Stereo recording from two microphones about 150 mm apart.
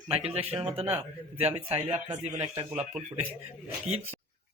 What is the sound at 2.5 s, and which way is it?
Speech, 20° right (ahead or behind).